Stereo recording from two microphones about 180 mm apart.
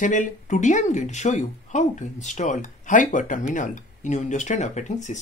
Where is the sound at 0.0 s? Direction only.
45° left (ahead or behind).